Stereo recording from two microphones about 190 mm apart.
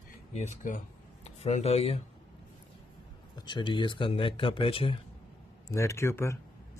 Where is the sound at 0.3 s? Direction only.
40° left (ahead or behind).